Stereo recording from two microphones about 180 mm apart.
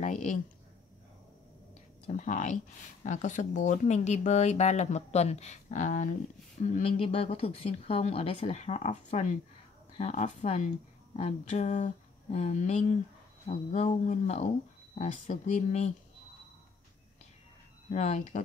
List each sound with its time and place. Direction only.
0.0 s a sound: 45° left (ahead or behind)
2.0 s speech: 45° left (ahead or behind)
17.8 s speech: 40° left (ahead or behind)